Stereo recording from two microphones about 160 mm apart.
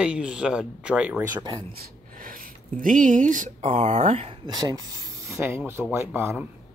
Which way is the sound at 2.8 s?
55° right (ahead or behind).